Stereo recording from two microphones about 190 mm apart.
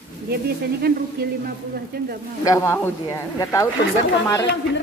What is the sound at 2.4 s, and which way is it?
Speech, 15° left (ahead or behind).